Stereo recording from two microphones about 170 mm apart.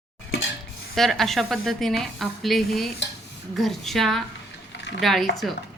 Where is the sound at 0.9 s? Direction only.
Centre (ahead or behind).